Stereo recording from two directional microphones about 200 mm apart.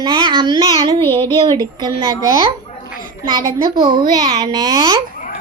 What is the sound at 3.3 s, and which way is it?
Child singing, 20° right (ahead or behind).